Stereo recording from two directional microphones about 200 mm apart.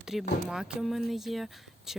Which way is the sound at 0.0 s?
Centre (ahead or behind).